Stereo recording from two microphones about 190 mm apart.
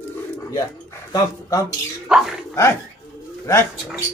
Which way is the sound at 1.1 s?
20° left (ahead or behind).